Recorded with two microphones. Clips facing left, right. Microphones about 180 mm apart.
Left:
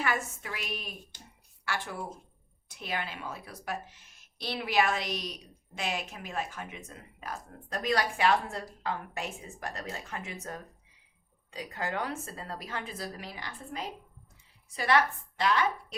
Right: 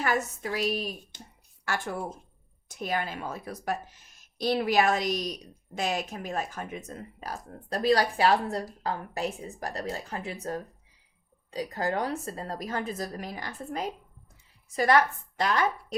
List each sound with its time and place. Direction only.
0.0 s a woman's voice: 40° right (ahead or behind)